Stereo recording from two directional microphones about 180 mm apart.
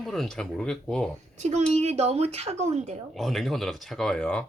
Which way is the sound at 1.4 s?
40° right (ahead or behind).